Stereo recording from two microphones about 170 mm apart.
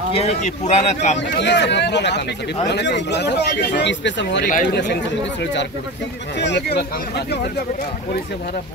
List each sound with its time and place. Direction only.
0.1 s speech: 40° left (ahead or behind)
1.4 s speech: 90° left
4.4 s speech: 50° left (ahead or behind)
5.4 s speech: 90° left; by 7.3 s 75° left (ahead or behind)